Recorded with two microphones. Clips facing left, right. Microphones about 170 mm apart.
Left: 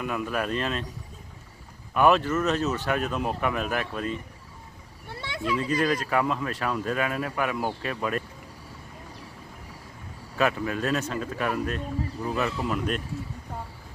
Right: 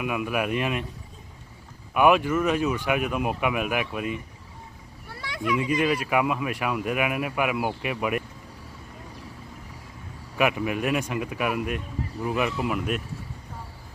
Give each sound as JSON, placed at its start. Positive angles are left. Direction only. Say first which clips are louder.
{"t": 0.0, "sound": "speech", "louder": "right 2 dB", "side_deg": -10}
{"t": 1.9, "sound": "speech", "louder": "right 1 dB", "side_deg": -10}
{"t": 5.0, "sound": "a sound", "louder": "right 1 dB", "side_deg": 25}
{"t": 5.8, "sound": "speech", "louder": "right 1 dB", "side_deg": -10}
{"t": 10.3, "sound": "speech", "louder": "right 1 dB", "side_deg": -15}